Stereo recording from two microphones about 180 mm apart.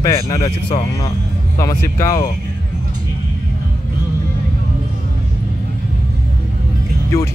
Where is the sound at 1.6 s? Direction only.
15° left (ahead or behind).